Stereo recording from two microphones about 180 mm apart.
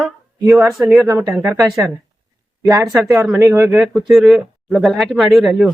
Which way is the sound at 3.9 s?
Centre (ahead or behind).